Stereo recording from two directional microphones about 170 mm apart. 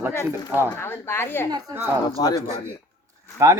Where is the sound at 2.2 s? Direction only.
25° left (ahead or behind).